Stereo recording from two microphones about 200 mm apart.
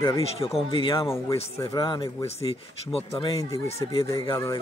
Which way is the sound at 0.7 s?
25° left (ahead or behind).